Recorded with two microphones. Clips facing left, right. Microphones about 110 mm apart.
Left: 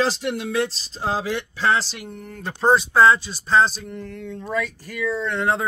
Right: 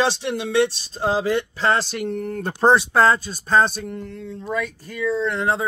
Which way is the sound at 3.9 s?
25° right (ahead or behind).